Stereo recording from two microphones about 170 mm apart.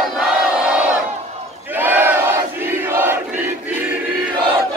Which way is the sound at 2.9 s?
15° right (ahead or behind).